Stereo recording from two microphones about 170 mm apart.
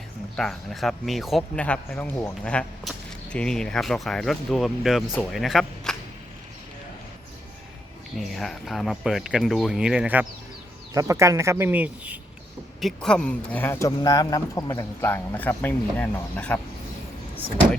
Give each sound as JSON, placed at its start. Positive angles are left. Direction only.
{"t": 0.3, "sound": "speech", "side_deg": 0}
{"t": 8.1, "sound": "speech", "side_deg": 0}
{"t": 10.9, "sound": "speech", "side_deg": -20}
{"t": 12.8, "sound": "speech", "side_deg": 5}